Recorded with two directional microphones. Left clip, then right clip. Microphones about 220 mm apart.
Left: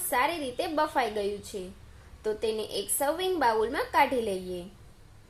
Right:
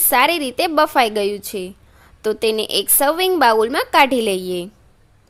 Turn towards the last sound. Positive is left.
turn(degrees=-45)  # may be behind; listen again after turning